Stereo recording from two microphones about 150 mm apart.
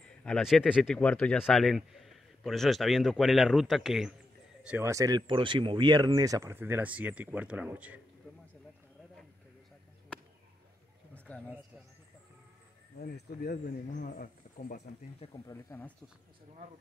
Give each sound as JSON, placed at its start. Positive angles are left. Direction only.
{"t": 0.0, "sound": "a man's voice", "side_deg": 5}
{"t": 4.6, "sound": "speech", "side_deg": -15}
{"t": 11.1, "sound": "a sound", "side_deg": 10}
{"t": 12.9, "sound": "speech", "side_deg": 90}
{"t": 15.3, "sound": "speech", "side_deg": 20}